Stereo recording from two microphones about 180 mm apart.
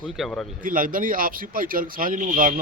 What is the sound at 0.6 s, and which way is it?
Speech, 50° right (ahead or behind).